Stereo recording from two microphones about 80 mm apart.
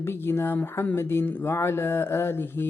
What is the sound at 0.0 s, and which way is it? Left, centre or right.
A woman's voice, left.